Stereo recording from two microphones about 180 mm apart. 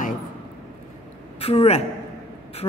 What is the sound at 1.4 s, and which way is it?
Speech, 35° left (ahead or behind).